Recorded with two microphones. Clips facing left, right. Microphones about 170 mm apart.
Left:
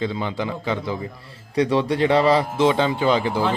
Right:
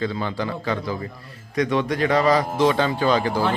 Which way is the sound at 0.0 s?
20° left (ahead or behind).